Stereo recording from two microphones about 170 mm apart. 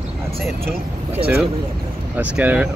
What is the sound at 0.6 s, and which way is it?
Speech, 65° right (ahead or behind).